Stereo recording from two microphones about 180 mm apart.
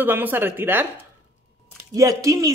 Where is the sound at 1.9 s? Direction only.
20° right (ahead or behind).